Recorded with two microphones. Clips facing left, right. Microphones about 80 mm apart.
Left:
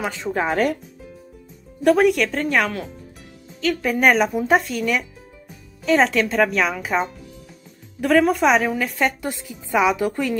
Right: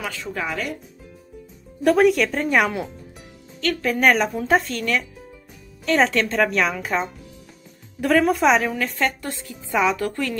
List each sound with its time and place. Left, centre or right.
0.0 s speech: left
1.8 s speech: centre
3.6 s speech: centre